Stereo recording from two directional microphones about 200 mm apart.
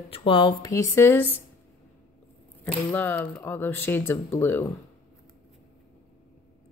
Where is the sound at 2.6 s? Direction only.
10° left (ahead or behind).